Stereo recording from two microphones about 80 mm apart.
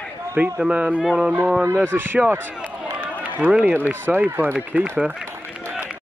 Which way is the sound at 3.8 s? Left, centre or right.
Right.